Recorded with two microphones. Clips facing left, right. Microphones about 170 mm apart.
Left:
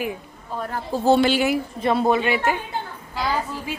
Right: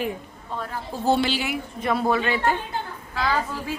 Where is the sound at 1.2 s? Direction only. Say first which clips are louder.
Left 6 dB; 50° left (ahead or behind).